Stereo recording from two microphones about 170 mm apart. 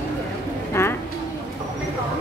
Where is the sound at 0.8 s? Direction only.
15° left (ahead or behind).